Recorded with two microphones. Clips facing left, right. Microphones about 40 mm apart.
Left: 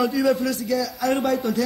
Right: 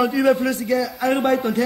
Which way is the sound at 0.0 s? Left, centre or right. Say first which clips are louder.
Right 3 dB; right.